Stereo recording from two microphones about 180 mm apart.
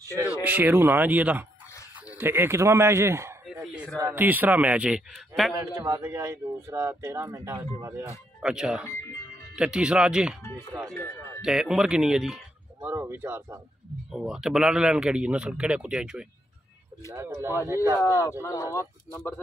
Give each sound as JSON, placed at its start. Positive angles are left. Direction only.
{"t": 0.0, "sound": "speech", "side_deg": -15}
{"t": 5.9, "sound": "speech", "side_deg": -20}
{"t": 8.4, "sound": "a man's voice", "side_deg": -5}
{"t": 8.8, "sound": "speech", "side_deg": 15}
{"t": 9.6, "sound": "a man's voice", "side_deg": -5}
{"t": 11.0, "sound": "speech", "side_deg": 15}
{"t": 11.4, "sound": "a man's voice", "side_deg": -5}
{"t": 12.8, "sound": "a man's voice", "side_deg": -15}
{"t": 17.9, "sound": "speech", "side_deg": 15}